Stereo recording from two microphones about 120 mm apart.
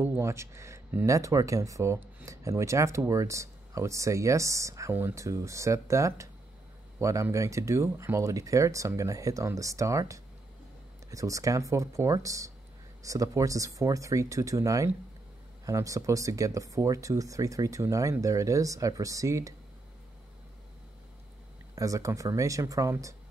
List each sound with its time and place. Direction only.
0.0 s speech: 20° right (ahead or behind)
21.7 s speech: 30° right (ahead or behind)